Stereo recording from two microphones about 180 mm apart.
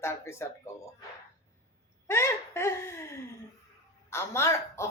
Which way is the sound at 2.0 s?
15° left (ahead or behind).